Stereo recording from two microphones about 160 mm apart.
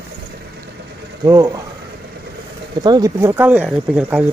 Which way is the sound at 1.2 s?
20° right (ahead or behind).